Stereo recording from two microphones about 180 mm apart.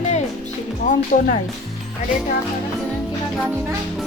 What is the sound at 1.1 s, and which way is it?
Speech, 45° left (ahead or behind).